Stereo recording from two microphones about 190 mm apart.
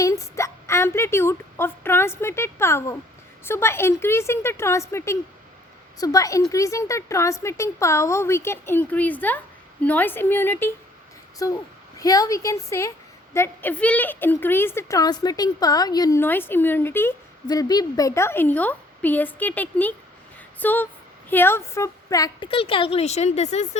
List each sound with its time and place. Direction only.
0.0 s a woman's voice: 15° left (ahead or behind); by 23.6 s 35° left (ahead or behind)